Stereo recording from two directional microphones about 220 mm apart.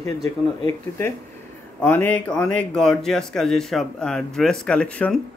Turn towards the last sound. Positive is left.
turn(degrees=5)  # may be behind; listen again after turning